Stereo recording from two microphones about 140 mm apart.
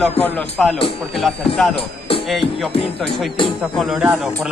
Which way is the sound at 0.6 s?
5° left (ahead or behind).